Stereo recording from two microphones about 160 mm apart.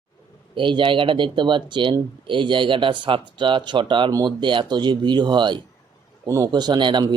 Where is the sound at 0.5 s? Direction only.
30° right (ahead or behind).